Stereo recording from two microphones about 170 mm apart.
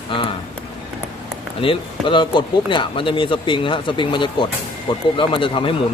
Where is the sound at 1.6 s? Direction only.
30° left (ahead or behind).